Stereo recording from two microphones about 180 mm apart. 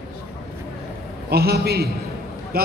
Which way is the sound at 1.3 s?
60° right (ahead or behind).